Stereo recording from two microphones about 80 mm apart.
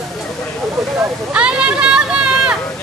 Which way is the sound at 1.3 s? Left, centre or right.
Centre.